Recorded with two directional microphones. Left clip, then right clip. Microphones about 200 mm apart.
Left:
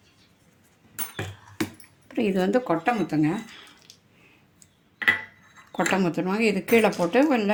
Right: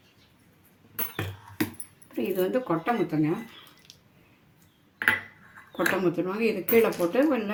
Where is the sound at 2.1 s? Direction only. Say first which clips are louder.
Left 3 dB; 55° left (ahead or behind).